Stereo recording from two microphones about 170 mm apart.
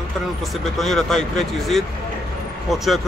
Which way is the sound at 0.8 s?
Centre (ahead or behind).